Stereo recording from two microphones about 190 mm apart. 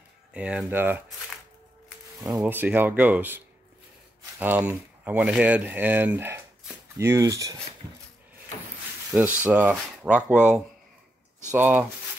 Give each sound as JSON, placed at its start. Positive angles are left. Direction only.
{"t": 0.3, "sound": "speech", "side_deg": -5}
{"t": 2.3, "sound": "speech", "side_deg": -10}
{"t": 9.1, "sound": "speech", "side_deg": -10}